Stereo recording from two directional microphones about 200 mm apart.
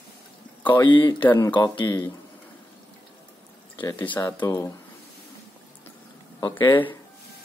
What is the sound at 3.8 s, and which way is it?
Speech, 10° left (ahead or behind).